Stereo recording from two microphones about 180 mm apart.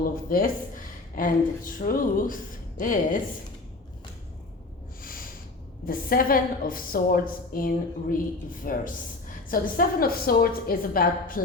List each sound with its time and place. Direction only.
0.0 s speech: 50° left (ahead or behind)
5.0 s snort: 50° left (ahead or behind)
5.8 s speech: 50° left (ahead or behind)